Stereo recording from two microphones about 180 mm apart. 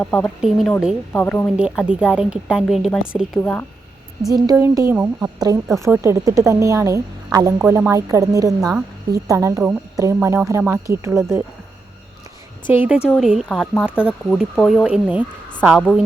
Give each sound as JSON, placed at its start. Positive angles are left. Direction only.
{"t": 0.0, "sound": "speech", "side_deg": 5}
{"t": 1.1, "sound": "speech", "side_deg": 10}
{"t": 1.5, "sound": "speech", "side_deg": -5}
{"t": 3.4, "sound": "speech", "side_deg": 10}
{"t": 4.4, "sound": "a woman's voice", "side_deg": -20}
{"t": 5.6, "sound": "speech", "side_deg": 0}
{"t": 5.9, "sound": "a woman's voice", "side_deg": -15}
{"t": 12.7, "sound": "a woman's voice", "side_deg": -10}
{"t": 13.9, "sound": "speech", "side_deg": 10}